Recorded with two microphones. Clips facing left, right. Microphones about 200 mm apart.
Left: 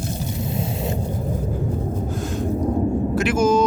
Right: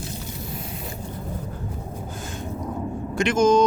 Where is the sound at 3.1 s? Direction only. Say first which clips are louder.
Right 2 dB; 5° left (ahead or behind).